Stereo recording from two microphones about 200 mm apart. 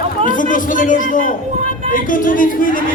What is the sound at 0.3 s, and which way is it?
A man's voice, 40° left (ahead or behind).